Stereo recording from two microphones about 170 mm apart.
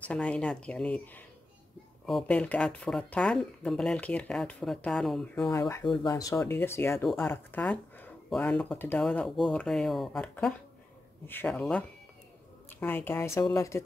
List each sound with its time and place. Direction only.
0.1 s speech: 5° left (ahead or behind)
5.5 s speech: 15° left (ahead or behind)